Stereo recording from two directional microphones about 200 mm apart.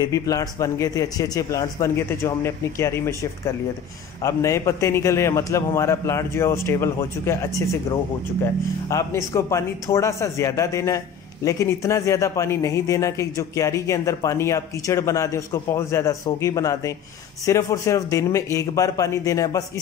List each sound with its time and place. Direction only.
0.0 s speech: 15° left (ahead or behind)